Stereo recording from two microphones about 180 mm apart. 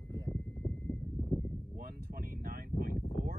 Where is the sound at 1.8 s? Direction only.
55° right (ahead or behind).